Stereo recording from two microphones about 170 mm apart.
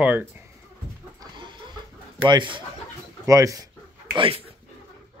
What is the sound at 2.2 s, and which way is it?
Speech, 30° right (ahead or behind).